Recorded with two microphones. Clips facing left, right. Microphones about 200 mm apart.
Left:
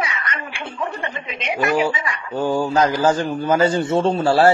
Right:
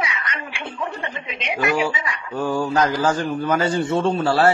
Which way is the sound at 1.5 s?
45° left (ahead or behind).